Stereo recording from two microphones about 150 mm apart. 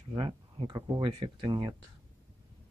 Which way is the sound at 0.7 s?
30° right (ahead or behind).